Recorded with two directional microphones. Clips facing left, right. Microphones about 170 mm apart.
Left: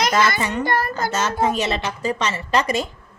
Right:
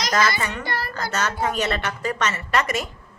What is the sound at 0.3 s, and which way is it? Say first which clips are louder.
Speech: left 5 dB; 50° left (ahead or behind).